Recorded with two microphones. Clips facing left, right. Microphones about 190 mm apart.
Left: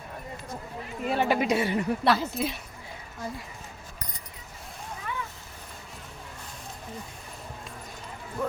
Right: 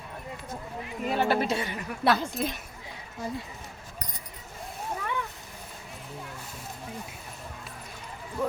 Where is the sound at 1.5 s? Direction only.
25° left (ahead or behind).